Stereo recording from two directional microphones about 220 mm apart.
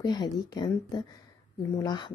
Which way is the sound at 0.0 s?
20° left (ahead or behind).